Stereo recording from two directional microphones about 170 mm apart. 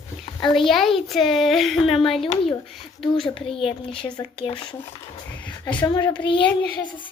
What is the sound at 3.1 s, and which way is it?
A child's voice, 30° left (ahead or behind).